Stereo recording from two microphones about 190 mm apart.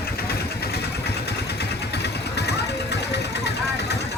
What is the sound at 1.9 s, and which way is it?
Vehicle, 60° left (ahead or behind).